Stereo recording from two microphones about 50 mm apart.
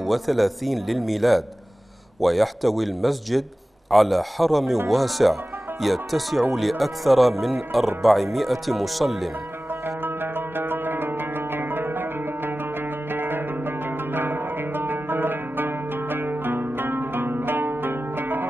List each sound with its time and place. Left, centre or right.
0.0 s speech: centre
9.8 s music: right